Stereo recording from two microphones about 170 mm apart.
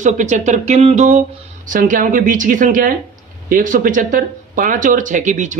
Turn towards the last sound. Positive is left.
turn(degrees=-50)  # may be behind; listen again after turning